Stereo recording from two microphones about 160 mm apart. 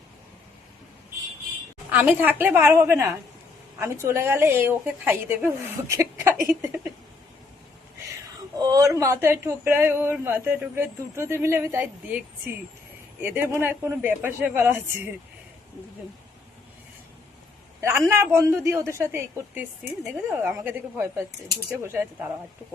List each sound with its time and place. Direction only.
1.9 s speech: 10° right (ahead or behind)
8.6 s speech: 20° right (ahead or behind)
13.2 s speech: 15° right (ahead or behind)
17.7 s a woman's voice: 15° right (ahead or behind)